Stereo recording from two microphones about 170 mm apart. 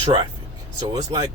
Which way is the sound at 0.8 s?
25° right (ahead or behind).